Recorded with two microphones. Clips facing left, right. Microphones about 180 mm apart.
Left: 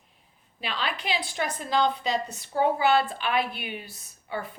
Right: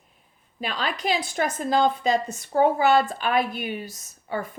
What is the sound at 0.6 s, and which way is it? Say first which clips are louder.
A woman's voice: right 4 dB; 45° right (ahead or behind).